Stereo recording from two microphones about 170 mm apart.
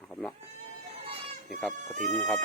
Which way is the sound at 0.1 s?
10° left (ahead or behind).